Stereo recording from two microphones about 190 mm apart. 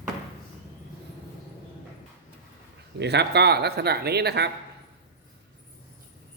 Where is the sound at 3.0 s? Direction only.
60° right (ahead or behind).